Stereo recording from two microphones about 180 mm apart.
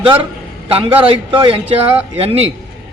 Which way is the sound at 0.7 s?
30° right (ahead or behind).